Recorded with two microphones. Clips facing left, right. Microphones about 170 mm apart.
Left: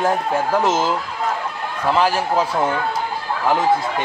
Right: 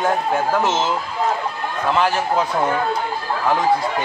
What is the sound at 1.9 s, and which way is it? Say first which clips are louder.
Speech: left 1 dB; 5° left (ahead or behind).